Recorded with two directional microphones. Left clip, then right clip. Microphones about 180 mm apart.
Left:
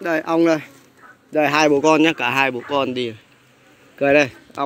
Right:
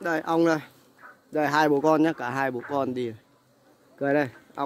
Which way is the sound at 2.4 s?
15° right (ahead or behind).